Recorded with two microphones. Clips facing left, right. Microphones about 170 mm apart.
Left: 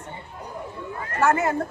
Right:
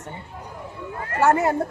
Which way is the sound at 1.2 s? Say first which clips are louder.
Right 2 dB; 35° right (ahead or behind).